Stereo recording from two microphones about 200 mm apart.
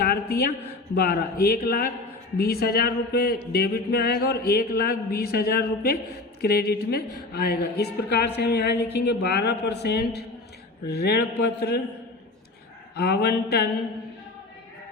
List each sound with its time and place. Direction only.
0.0 s a sound: 50° left (ahead or behind)
0.9 s a woman's voice: 50° left (ahead or behind)
13.0 s a woman's voice: 55° left (ahead or behind)